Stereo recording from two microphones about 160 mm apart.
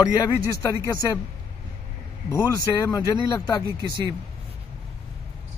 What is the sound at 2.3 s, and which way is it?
A man's voice, 20° left (ahead or behind).